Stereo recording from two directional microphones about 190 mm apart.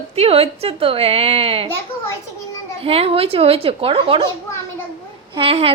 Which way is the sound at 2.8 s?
30° right (ahead or behind).